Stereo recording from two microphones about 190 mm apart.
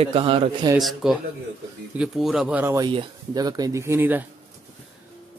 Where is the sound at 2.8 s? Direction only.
25° right (ahead or behind).